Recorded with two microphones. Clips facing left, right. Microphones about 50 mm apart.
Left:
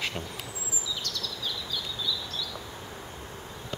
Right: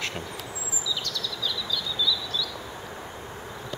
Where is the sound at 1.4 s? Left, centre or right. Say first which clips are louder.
Right 6 dB; right.